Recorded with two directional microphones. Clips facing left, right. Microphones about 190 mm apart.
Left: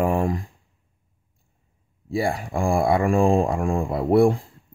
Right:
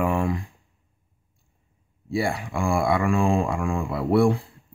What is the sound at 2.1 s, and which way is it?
Speech, 40° left (ahead or behind).